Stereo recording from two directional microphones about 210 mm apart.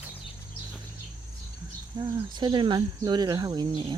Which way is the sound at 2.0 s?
20° right (ahead or behind).